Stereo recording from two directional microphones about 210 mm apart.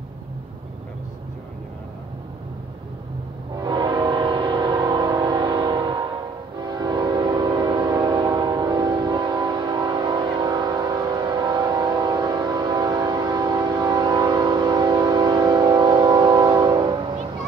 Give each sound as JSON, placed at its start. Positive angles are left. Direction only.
{"t": 3.5, "sound": "train", "side_deg": -20}